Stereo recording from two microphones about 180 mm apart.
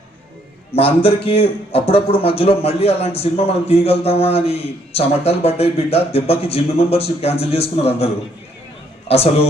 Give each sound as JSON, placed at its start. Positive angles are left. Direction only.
{"t": 0.7, "sound": "a man's voice", "side_deg": 30}